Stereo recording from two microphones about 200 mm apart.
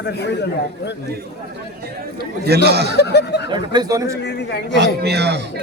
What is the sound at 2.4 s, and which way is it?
Speech, 55° right (ahead or behind).